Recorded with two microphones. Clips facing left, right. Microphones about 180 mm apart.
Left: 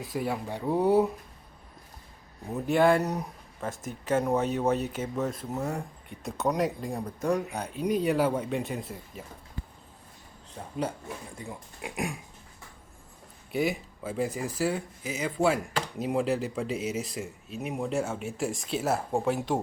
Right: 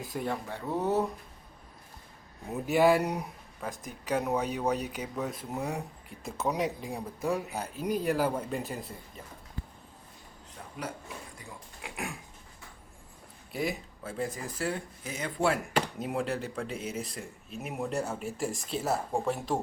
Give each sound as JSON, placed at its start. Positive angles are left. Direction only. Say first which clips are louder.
{"t": 0.0, "sound": "speech", "louder": "left 3 dB", "side_deg": 0}
{"t": 0.4, "sound": "speech", "louder": "left 5 dB", "side_deg": 15}
{"t": 2.5, "sound": "speech", "louder": "left 1 dB", "side_deg": -5}
{"t": 3.6, "sound": "speech", "louder": "left 4 dB", "side_deg": 0}
{"t": 5.5, "sound": "speech", "louder": "left 2 dB", "side_deg": -10}
{"t": 11.3, "sound": "speech", "louder": "left 6 dB", "side_deg": 20}
{"t": 13.5, "sound": "speech", "louder": "left 5 dB", "side_deg": 0}